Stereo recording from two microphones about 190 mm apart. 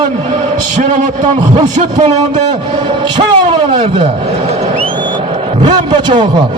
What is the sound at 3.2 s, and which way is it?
Speech, 25° right (ahead or behind).